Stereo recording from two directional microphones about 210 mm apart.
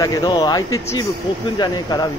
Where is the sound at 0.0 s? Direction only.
20° left (ahead or behind).